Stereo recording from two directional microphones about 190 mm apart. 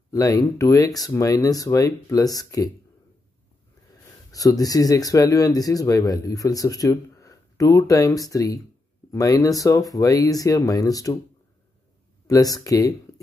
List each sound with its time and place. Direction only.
0.1 s speech: 20° left (ahead or behind)
4.3 s speech: 20° left (ahead or behind)
12.3 s speech: 20° left (ahead or behind)